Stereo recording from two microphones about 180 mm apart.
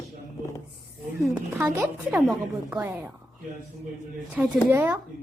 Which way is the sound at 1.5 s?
15° right (ahead or behind).